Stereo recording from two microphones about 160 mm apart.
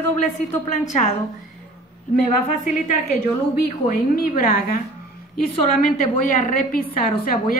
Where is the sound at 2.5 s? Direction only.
50° left (ahead or behind).